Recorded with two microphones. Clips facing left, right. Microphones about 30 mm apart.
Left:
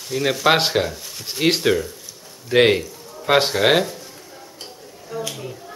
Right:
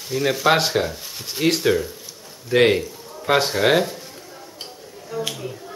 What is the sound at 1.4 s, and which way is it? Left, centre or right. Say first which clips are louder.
Speech: left 1 dB; centre.